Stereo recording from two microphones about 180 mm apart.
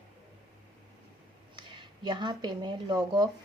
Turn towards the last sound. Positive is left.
turn(degrees=-25)  # may be behind; listen again after turning